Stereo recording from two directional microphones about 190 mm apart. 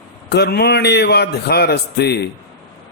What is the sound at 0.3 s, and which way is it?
A man's voice, 60° left (ahead or behind).